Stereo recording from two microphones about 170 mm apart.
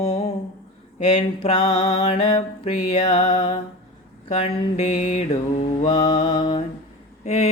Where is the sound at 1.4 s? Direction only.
25° left (ahead or behind).